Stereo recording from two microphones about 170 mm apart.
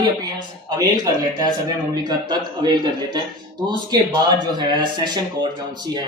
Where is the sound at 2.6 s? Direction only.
25° right (ahead or behind).